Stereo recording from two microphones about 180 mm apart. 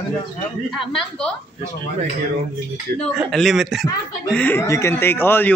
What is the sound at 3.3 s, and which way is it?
Speech, centre (ahead or behind).